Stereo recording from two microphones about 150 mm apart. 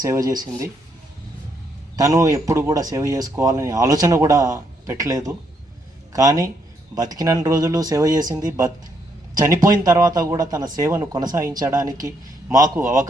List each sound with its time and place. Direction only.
0.0 s speech: 25° right (ahead or behind)
2.0 s speech: 20° right (ahead or behind)